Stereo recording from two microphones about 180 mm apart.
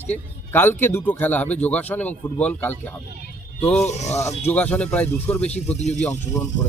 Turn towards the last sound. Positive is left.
turn(degrees=15)  # may be behind; listen again after turning